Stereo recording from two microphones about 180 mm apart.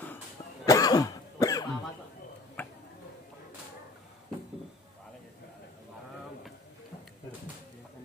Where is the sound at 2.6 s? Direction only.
10° left (ahead or behind).